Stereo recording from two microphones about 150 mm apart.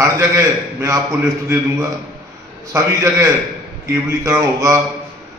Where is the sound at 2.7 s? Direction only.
20° right (ahead or behind).